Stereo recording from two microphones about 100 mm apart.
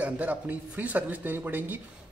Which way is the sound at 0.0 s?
15° right (ahead or behind).